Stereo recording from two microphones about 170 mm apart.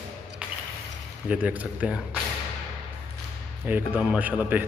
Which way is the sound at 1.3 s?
10° right (ahead or behind).